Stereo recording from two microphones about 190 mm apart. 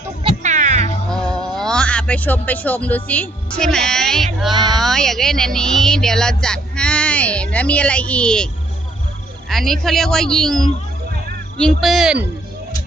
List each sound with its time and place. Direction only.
0.2 s music: 30° right (ahead or behind)
0.5 s cat: 40° right (ahead or behind)
1.1 s speech: 5° left (ahead or behind)
4.5 s speech: 20° right (ahead or behind)
4.8 s speech: centre (ahead or behind)
9.5 s speech: centre (ahead or behind)
11.8 s speech: centre (ahead or behind)